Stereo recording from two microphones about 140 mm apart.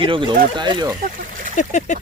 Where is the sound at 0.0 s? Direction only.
35° right (ahead or behind).